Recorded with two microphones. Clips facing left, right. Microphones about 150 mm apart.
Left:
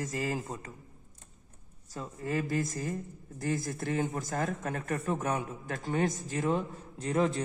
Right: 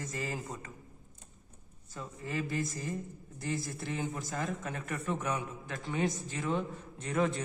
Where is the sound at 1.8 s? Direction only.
40° left (ahead or behind).